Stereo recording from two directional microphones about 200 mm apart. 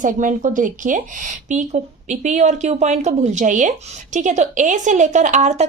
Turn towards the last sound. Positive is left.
turn(degrees=-35)  # may be behind; listen again after turning